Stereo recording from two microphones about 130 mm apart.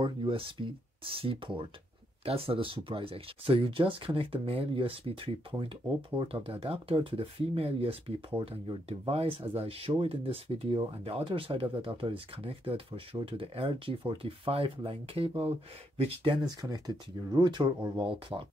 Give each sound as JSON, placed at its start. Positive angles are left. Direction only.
{"t": 0.0, "sound": "speech", "side_deg": -40}
{"t": 16.4, "sound": "speech", "side_deg": -30}